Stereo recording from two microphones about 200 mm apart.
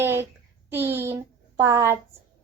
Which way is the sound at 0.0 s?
10° right (ahead or behind).